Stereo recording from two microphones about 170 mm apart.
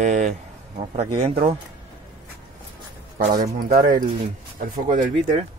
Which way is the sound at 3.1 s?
55° right (ahead or behind).